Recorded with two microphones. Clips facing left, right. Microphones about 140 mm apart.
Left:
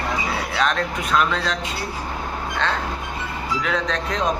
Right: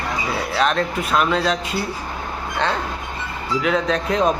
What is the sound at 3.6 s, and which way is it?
Speech, 5° right (ahead or behind).